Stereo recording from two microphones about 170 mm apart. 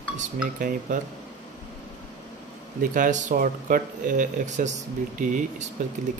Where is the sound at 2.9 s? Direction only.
50° right (ahead or behind).